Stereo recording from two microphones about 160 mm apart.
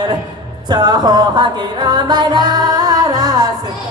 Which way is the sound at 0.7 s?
25° right (ahead or behind).